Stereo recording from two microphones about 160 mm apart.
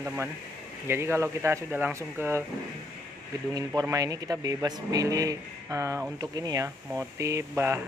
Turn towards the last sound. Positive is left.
turn(degrees=-15)  # may be behind; listen again after turning